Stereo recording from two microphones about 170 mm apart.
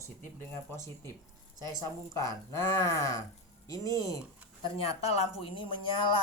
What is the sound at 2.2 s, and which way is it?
A woman's voice, 20° left (ahead or behind).